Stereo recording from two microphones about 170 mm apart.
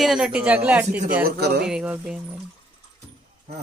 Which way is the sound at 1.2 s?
65° right (ahead or behind).